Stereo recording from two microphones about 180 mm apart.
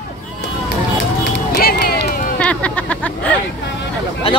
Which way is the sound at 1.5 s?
55° left (ahead or behind).